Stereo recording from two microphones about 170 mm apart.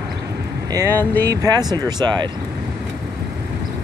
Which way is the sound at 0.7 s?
20° right (ahead or behind).